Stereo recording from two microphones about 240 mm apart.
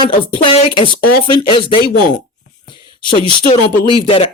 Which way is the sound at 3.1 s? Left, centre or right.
Centre.